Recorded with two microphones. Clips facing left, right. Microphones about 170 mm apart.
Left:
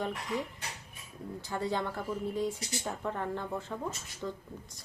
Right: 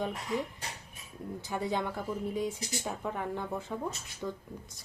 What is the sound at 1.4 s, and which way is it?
Speech, 15° right (ahead or behind).